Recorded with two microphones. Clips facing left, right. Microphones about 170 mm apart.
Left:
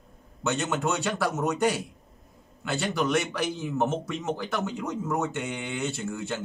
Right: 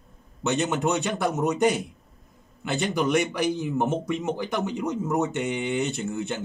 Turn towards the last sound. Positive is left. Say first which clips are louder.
# right 3 dB
turn(degrees=-20)  # may be behind; listen again after turning